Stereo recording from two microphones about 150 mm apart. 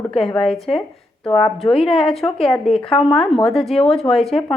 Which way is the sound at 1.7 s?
40° left (ahead or behind).